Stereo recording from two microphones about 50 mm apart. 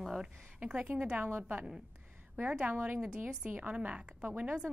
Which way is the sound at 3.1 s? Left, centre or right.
Right.